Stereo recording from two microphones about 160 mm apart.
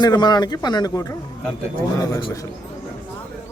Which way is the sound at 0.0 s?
25° left (ahead or behind).